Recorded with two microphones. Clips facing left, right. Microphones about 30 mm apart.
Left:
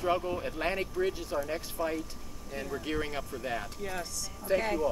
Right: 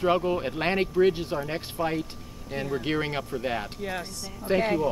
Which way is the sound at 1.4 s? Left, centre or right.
Right.